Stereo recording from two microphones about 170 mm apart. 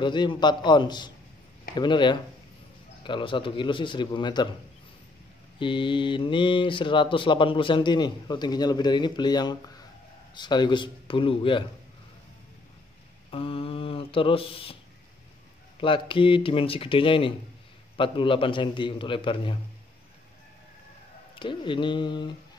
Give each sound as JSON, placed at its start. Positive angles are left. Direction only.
{"t": 0.0, "sound": "speech", "side_deg": 25}
{"t": 5.6, "sound": "speech", "side_deg": 30}
{"t": 13.3, "sound": "speech", "side_deg": 35}
{"t": 15.8, "sound": "speech", "side_deg": 30}
{"t": 21.4, "sound": "speech", "side_deg": 30}